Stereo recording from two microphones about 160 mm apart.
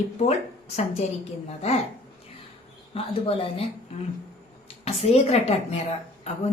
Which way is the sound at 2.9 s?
35° left (ahead or behind).